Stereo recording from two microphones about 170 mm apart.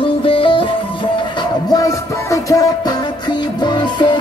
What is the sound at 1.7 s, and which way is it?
Music, 20° left (ahead or behind).